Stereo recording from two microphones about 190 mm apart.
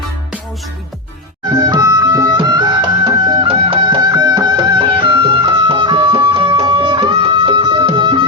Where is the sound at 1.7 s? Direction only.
20° right (ahead or behind).